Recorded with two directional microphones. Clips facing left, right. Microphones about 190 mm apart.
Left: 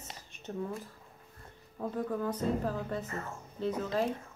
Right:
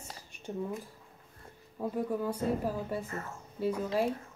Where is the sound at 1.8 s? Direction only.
10° right (ahead or behind).